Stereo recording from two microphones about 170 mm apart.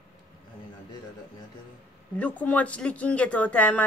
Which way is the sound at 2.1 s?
10° left (ahead or behind).